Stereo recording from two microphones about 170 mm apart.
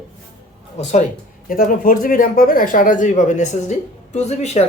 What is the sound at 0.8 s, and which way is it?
Speech, 45° left (ahead or behind).